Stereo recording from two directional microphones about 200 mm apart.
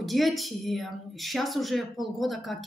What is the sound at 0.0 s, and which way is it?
Speech, centre (ahead or behind).